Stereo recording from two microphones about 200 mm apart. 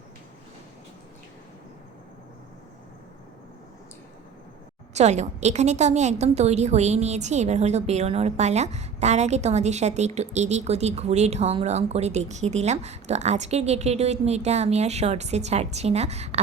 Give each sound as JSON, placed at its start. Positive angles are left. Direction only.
{"t": 4.9, "sound": "a woman's voice", "side_deg": -35}